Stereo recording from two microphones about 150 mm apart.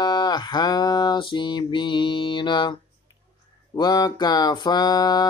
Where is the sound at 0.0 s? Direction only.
30° left (ahead or behind).